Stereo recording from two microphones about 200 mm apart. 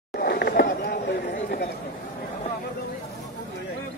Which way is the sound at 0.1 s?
50° left (ahead or behind).